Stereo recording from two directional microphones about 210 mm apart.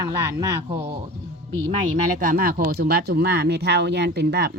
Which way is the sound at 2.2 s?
40° right (ahead or behind).